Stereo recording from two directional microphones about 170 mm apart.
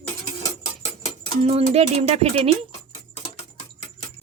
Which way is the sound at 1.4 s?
35° right (ahead or behind).